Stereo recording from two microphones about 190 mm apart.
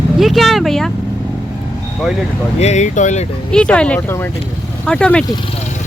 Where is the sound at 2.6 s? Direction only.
35° left (ahead or behind).